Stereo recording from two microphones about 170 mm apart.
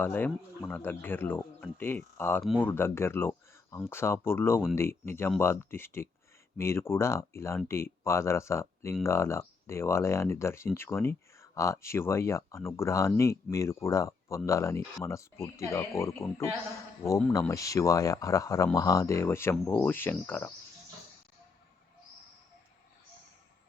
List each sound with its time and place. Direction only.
0.0 s speech: 10° left (ahead or behind)